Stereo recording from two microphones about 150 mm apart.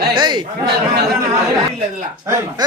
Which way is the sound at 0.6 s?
90° right.